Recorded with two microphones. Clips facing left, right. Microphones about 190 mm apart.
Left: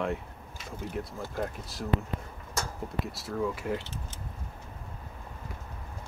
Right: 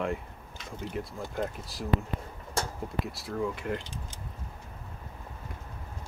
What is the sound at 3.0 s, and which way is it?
Speech, centre (ahead or behind).